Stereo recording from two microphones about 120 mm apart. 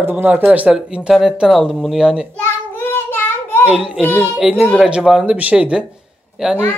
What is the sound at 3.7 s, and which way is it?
Speech, 5° right (ahead or behind).